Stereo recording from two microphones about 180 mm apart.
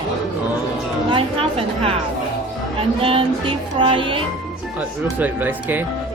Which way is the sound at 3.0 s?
30° right (ahead or behind).